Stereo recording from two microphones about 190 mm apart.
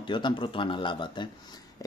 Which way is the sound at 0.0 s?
25° left (ahead or behind).